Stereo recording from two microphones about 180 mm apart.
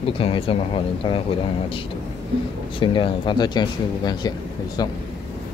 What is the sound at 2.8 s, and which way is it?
Speech, 25° left (ahead or behind).